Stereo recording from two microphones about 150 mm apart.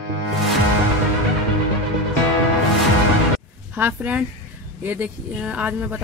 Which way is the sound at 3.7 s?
10° right (ahead or behind).